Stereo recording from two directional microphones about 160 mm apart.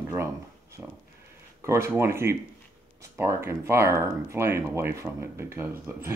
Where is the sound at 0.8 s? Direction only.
10° right (ahead or behind).